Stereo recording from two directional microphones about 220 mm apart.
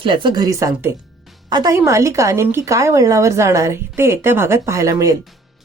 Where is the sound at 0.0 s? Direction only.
20° right (ahead or behind).